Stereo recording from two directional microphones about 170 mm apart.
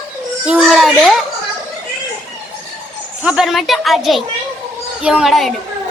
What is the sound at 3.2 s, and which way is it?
A child's voice, 5° right (ahead or behind).